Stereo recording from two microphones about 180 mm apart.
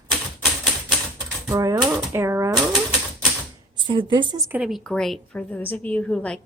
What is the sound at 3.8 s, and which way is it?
Speech, 25° right (ahead or behind).